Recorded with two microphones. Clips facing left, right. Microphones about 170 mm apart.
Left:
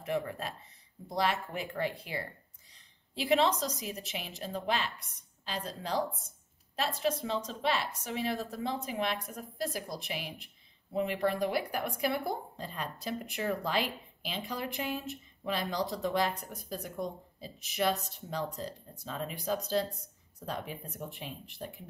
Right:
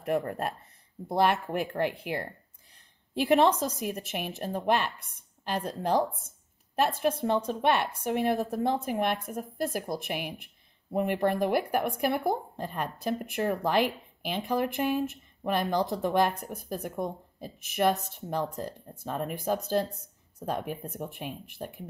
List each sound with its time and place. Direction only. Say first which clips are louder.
0.0 s a woman's voice: right 5 dB; 50° right (ahead or behind)
3.3 s a woman's voice: right 5 dB; 55° right (ahead or behind)
10.4 s a sound: even; 55° right (ahead or behind)
11.2 s a woman's voice: right 5 dB; 50° right (ahead or behind)